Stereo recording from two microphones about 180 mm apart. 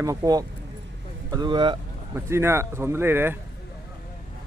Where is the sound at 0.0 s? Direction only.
20° right (ahead or behind).